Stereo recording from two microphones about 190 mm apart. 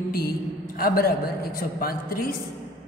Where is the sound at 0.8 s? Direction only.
50° left (ahead or behind).